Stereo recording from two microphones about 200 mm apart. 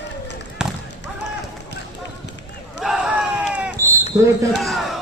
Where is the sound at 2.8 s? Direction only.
5° right (ahead or behind).